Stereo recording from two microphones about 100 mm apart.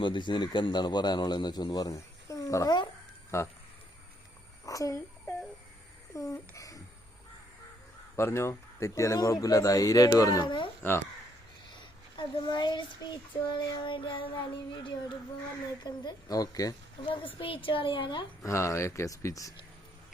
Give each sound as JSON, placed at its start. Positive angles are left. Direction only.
{"t": 0.0, "sound": "child singing", "side_deg": 50}
{"t": 3.3, "sound": "speech", "side_deg": 30}
{"t": 4.6, "sound": "speech", "side_deg": 35}
{"t": 6.1, "sound": "speech", "side_deg": 30}
{"t": 8.1, "sound": "speech", "side_deg": 25}
{"t": 12.1, "sound": "child singing", "side_deg": 50}
{"t": 15.8, "sound": "speech", "side_deg": 40}
{"t": 17.0, "sound": "speech", "side_deg": 60}
{"t": 18.4, "sound": "speech", "side_deg": 30}